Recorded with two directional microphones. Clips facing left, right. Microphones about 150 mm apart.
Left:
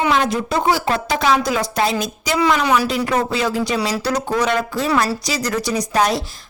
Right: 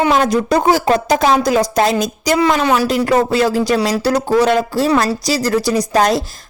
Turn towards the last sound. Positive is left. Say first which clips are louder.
# right 4 dB
turn(degrees=-40)  # may be behind; listen again after turning